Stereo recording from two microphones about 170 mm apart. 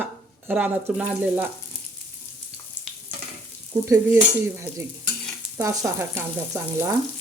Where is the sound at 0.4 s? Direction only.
10° right (ahead or behind).